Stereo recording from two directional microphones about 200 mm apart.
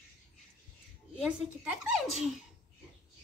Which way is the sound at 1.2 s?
5° right (ahead or behind).